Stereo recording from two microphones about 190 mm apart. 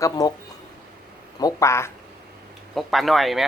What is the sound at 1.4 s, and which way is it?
Speech, 20° left (ahead or behind).